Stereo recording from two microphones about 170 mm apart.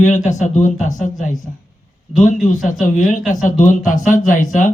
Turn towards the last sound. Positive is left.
turn(degrees=50)  # may be behind; listen again after turning